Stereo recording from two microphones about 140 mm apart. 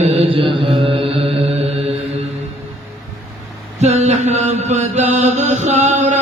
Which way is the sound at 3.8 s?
55° right (ahead or behind).